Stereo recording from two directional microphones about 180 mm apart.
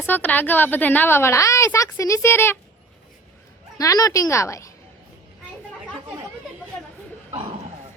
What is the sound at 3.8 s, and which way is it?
Speech, 20° left (ahead or behind).